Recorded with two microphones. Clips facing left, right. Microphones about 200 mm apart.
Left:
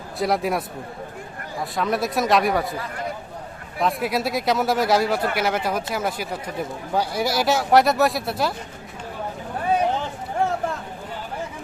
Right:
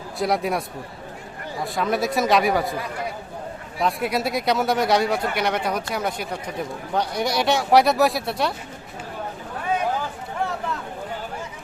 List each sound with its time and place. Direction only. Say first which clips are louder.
0.2 s speech: left 1 dB; centre (ahead or behind)
1.7 s speech: right 1 dB; centre (ahead or behind)
3.8 s speech: even; centre (ahead or behind)
9.7 s a sound: left 2 dB; 25° left (ahead or behind)